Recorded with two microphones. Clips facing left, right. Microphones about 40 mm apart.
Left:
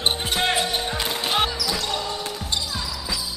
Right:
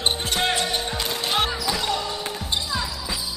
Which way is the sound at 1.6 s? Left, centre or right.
Centre.